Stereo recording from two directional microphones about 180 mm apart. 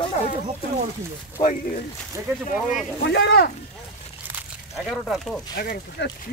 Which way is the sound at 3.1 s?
65° left (ahead or behind).